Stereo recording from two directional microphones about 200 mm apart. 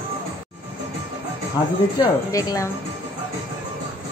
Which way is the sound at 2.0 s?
20° left (ahead or behind).